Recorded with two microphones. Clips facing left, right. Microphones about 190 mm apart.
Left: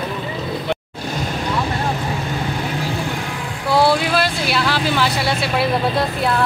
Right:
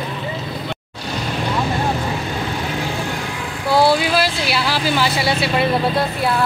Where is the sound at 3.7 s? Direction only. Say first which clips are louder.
Right 1 dB; centre (ahead or behind).